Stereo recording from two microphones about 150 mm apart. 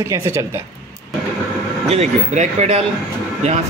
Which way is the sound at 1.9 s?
50° right (ahead or behind).